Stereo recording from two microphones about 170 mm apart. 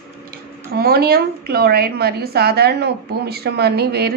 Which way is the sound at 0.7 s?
65° right (ahead or behind).